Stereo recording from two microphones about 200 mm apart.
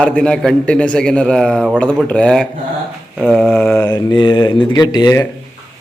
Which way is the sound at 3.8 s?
20° left (ahead or behind).